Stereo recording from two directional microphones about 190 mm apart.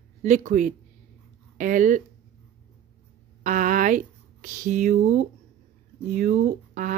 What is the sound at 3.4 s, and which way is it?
Speech, 45° right (ahead or behind).